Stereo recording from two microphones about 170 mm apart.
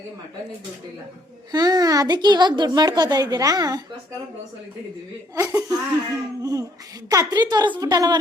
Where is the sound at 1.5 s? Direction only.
20° right (ahead or behind).